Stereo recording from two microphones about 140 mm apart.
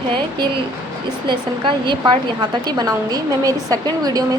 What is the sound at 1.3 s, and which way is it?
A woman's voice, 35° right (ahead or behind).